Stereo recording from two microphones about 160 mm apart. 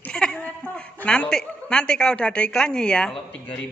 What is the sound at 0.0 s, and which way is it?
A woman's voice, 5° left (ahead or behind).